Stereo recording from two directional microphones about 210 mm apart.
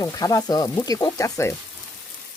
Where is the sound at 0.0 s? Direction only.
15° left (ahead or behind).